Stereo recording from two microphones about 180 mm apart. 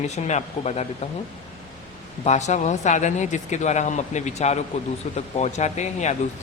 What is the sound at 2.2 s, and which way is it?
Speech, 40° left (ahead or behind).